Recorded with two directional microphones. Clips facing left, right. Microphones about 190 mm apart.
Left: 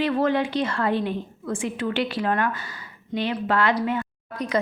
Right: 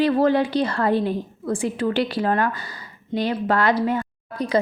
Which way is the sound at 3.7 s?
40° right (ahead or behind).